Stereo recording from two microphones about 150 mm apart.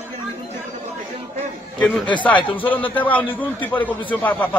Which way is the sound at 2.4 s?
35° left (ahead or behind).